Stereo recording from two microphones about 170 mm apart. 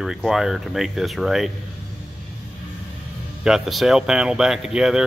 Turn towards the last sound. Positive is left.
turn(degrees=-5)  # may be behind; listen again after turning